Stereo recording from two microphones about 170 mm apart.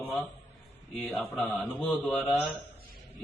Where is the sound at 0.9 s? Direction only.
Centre (ahead or behind).